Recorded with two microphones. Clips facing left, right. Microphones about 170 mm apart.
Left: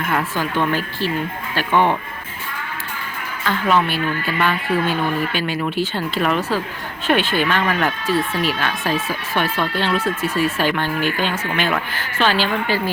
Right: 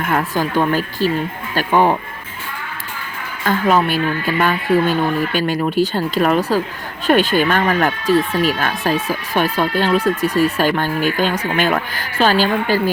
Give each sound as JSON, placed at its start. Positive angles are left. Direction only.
{"t": 0.1, "sound": "a woman's voice", "side_deg": -40}
{"t": 3.4, "sound": "a woman's voice", "side_deg": -40}
{"t": 10.0, "sound": "speech", "side_deg": -15}
{"t": 10.3, "sound": "speech", "side_deg": -40}